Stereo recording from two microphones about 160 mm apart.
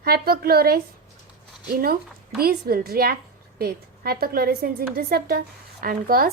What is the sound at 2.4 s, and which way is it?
A woman's voice, 70° right (ahead or behind).